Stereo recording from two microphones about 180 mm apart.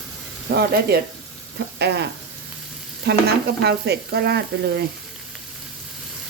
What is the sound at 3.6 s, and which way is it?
Frying, 65° right (ahead or behind).